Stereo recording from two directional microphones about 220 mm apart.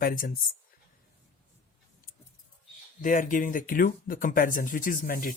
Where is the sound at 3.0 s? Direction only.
35° left (ahead or behind).